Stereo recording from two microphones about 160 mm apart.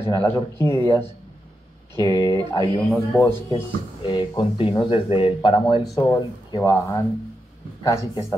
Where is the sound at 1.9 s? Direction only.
20° left (ahead or behind).